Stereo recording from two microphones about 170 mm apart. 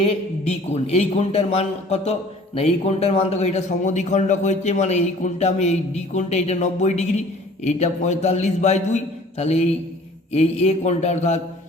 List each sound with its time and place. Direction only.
0.7 s a man's voice: 35° left (ahead or behind)